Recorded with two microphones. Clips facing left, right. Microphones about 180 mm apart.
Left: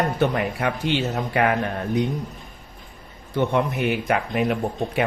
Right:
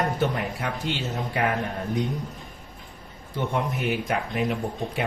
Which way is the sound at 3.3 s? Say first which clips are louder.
Left 6 dB; 70° left (ahead or behind).